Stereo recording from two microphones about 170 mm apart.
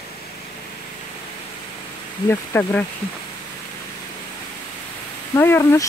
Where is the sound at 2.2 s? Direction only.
15° left (ahead or behind).